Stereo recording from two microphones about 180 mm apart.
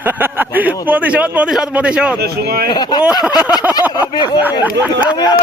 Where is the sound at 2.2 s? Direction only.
60° right (ahead or behind).